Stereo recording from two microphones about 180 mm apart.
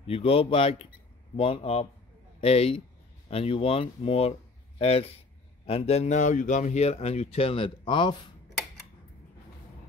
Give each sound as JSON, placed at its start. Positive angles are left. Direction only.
{"t": 0.0, "sound": "speech", "side_deg": 30}